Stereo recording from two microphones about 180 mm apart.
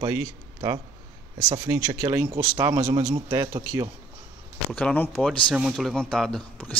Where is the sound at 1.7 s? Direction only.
15° right (ahead or behind).